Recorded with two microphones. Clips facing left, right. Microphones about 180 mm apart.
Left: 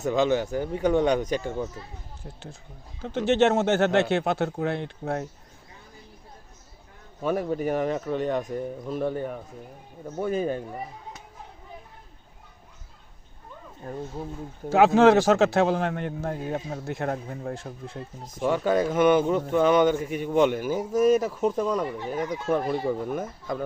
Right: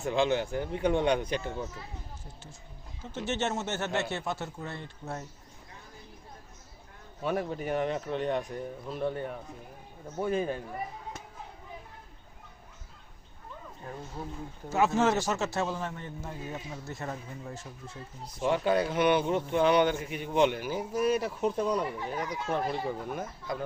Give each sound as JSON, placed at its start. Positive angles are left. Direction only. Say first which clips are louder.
{"t": 0.0, "sound": "speech", "louder": "left 4 dB", "side_deg": 40}
{"t": 3.2, "sound": "speech", "louder": "left 11 dB", "side_deg": 65}
{"t": 7.2, "sound": "speech", "louder": "left 5 dB", "side_deg": 45}
{"t": 13.8, "sound": "speech", "louder": "left 6 dB", "side_deg": 40}
{"t": 14.7, "sound": "a man's voice", "louder": "left 9 dB", "side_deg": 80}
{"t": 18.4, "sound": "speech", "louder": "left 4 dB", "side_deg": 45}